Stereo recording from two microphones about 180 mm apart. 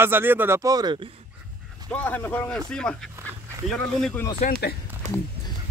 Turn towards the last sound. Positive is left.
turn(degrees=-40)  # may be behind; listen again after turning